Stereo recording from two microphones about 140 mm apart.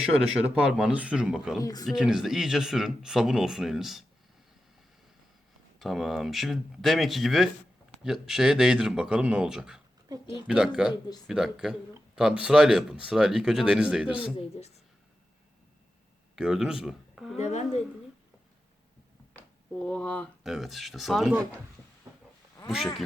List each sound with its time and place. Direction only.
0.2 s speech: 5° right (ahead or behind)
1.6 s speech: 25° left (ahead or behind)
1.9 s speech: 5° right (ahead or behind)
5.8 s speech: centre (ahead or behind)
14.3 s speech: 45° left (ahead or behind)
16.3 s speech: 5° right (ahead or behind)
17.3 s speech: 55° left (ahead or behind)
19.4 s speech: 10° left (ahead or behind)